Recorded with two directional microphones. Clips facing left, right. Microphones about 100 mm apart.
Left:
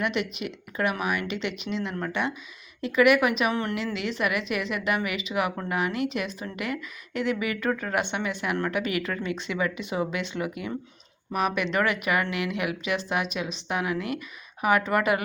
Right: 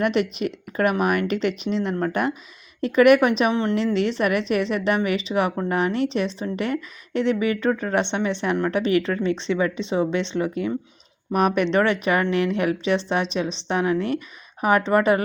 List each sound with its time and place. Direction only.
0.0 s a woman's voice: 35° right (ahead or behind)
3.5 s speech: 20° right (ahead or behind)
3.9 s a woman's voice: 35° right (ahead or behind)
11.3 s a woman's voice: 45° right (ahead or behind)